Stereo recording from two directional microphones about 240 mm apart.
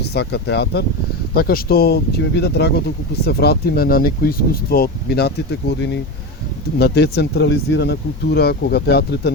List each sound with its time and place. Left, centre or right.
0.0 s speech: left